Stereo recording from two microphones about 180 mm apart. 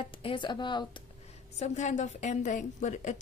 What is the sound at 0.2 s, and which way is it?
Speech, 25° left (ahead or behind).